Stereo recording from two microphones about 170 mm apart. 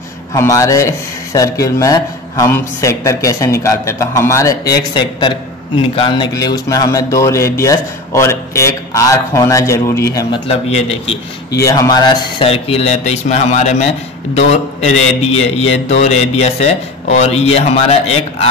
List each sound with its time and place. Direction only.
0.3 s a man's voice: 20° left (ahead or behind)
10.5 s a man's voice: 35° left (ahead or behind)
11.5 s a man's voice: 20° left (ahead or behind); by 18.5 s 40° left (ahead or behind)